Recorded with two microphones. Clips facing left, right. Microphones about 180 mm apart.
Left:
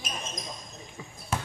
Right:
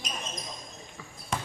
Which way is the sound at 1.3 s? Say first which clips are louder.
Left 1 dB; 5° left (ahead or behind).